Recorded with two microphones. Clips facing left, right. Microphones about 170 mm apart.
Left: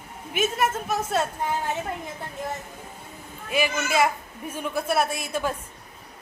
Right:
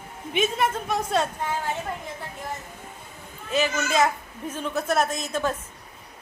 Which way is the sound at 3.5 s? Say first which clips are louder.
Right 1 dB; 10° left (ahead or behind).